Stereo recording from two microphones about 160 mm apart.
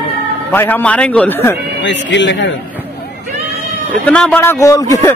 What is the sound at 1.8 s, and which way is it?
Speech, 90° left.